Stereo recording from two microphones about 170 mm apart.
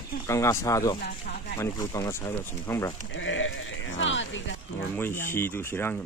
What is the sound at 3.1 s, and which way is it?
Speech, 90° left.